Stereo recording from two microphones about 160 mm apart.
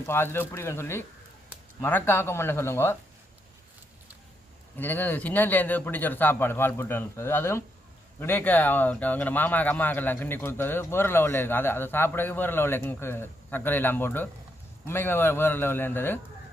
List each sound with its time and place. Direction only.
0.0 s speech: 15° left (ahead or behind)
4.8 s speech: 10° left (ahead or behind)